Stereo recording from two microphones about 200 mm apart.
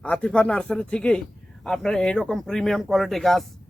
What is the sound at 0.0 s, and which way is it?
Speech, 5° left (ahead or behind).